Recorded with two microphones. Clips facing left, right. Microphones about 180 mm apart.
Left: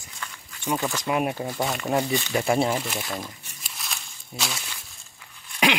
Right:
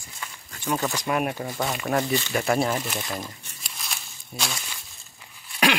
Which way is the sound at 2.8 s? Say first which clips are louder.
Even; centre (ahead or behind).